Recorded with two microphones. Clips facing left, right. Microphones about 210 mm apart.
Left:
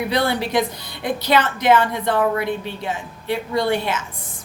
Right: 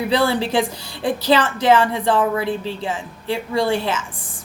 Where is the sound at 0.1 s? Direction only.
30° right (ahead or behind).